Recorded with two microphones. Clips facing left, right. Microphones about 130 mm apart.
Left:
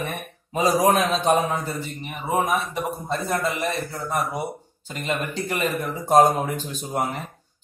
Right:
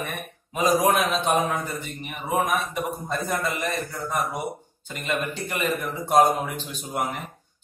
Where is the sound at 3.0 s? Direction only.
30° left (ahead or behind).